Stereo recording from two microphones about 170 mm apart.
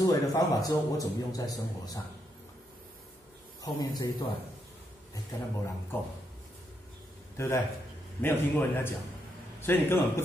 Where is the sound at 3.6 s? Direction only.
20° left (ahead or behind).